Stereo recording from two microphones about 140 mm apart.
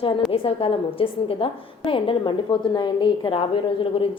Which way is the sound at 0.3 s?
40° left (ahead or behind).